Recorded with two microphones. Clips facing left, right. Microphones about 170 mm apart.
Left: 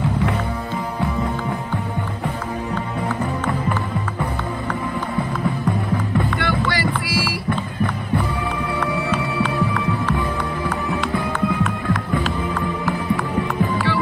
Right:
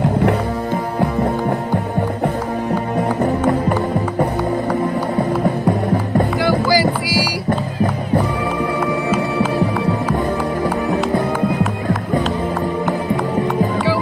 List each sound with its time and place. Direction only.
3.2 s music: 40° right (ahead or behind)
6.4 s boat: centre (ahead or behind)